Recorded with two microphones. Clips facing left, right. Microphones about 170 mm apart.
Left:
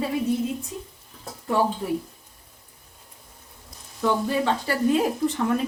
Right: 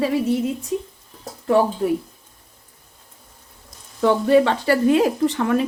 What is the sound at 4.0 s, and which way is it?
Speech, 70° right (ahead or behind).